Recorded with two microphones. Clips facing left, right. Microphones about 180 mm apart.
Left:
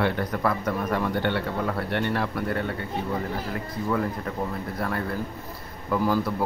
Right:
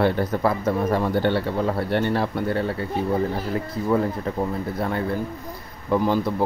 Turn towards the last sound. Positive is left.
turn(degrees=-20)  # may be behind; listen again after turning